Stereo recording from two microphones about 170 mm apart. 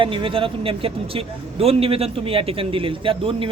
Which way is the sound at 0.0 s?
30° right (ahead or behind).